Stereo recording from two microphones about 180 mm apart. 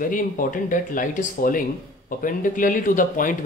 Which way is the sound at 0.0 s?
50° left (ahead or behind).